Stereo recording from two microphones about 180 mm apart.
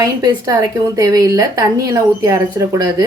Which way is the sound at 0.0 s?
20° right (ahead or behind).